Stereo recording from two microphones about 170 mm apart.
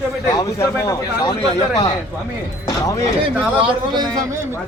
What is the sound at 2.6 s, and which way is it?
Speech, 20° left (ahead or behind).